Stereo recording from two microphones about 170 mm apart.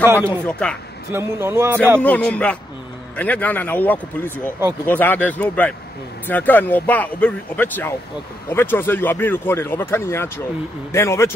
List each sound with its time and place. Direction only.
0.0 s speech: 15° right (ahead or behind)
0.5 s speech: 5° left (ahead or behind)
1.1 s speech: 15° right (ahead or behind)
2.0 s speech: 5° left (ahead or behind)